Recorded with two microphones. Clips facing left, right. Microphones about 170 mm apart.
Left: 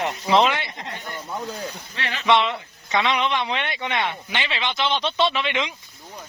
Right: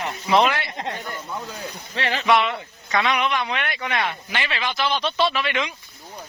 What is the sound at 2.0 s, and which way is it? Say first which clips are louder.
Speech: right 6 dB; 35° right (ahead or behind).